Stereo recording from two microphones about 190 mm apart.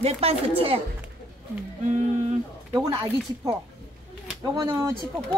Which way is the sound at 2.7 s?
20° right (ahead or behind).